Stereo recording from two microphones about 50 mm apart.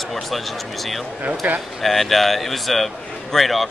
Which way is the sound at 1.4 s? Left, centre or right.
Right.